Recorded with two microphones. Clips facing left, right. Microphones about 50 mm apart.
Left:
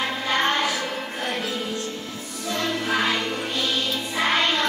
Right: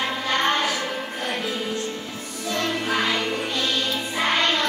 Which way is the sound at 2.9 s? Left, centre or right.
Centre.